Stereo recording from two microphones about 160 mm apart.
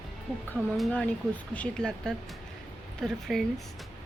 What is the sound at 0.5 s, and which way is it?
Speech, 5° left (ahead or behind).